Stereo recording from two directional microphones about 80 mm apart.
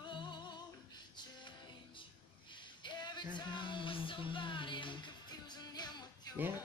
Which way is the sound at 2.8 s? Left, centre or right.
Left.